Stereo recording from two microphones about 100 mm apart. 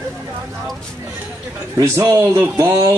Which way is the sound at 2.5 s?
35° right (ahead or behind).